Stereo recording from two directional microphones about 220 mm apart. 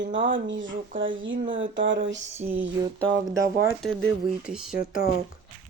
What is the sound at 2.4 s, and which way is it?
Speech, 10° right (ahead or behind).